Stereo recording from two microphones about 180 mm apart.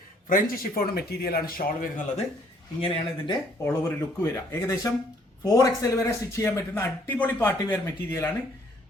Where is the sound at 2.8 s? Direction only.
30° left (ahead or behind).